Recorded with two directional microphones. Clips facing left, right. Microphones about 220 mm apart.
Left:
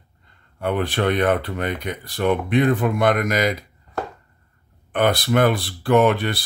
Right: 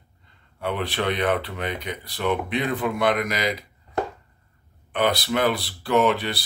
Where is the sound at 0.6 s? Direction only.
45° left (ahead or behind).